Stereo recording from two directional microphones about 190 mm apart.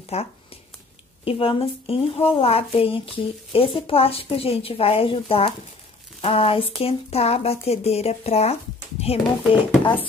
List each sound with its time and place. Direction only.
0.1 s a woman's voice: 35° left (ahead or behind)